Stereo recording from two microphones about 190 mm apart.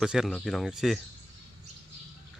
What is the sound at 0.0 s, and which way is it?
Speech, 5° right (ahead or behind).